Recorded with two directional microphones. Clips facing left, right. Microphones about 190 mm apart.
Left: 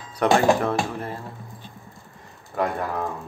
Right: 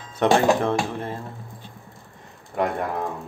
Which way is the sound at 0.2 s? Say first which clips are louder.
Even; 25° right (ahead or behind).